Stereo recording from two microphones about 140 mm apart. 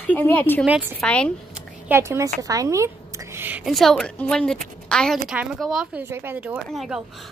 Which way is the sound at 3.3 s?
15° right (ahead or behind).